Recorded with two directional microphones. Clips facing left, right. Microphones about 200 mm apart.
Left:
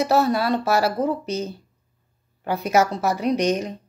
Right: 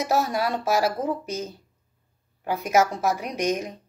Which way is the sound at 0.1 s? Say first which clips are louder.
Left 2 dB; 10° right (ahead or behind).